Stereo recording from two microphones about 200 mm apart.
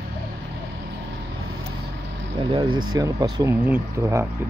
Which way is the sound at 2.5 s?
25° right (ahead or behind).